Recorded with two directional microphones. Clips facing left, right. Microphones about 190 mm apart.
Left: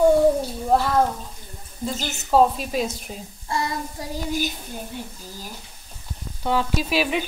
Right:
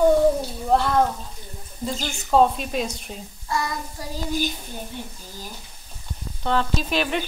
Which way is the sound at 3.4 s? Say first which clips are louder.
Even; 30° left (ahead or behind).